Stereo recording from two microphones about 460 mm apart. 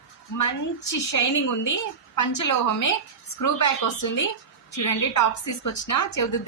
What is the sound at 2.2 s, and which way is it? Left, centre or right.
A woman's voice, left.